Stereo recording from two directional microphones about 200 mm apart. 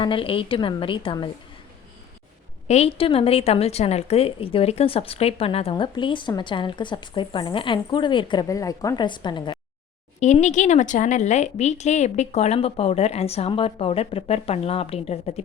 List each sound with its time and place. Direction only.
0.0 s a woman's voice: 25° left (ahead or behind)
2.6 s a woman's voice: 30° left (ahead or behind)
10.2 s speech: 35° left (ahead or behind)